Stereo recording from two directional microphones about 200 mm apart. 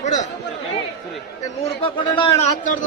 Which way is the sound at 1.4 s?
30° left (ahead or behind).